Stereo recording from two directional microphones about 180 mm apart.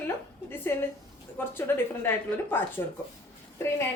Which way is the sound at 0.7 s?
10° left (ahead or behind).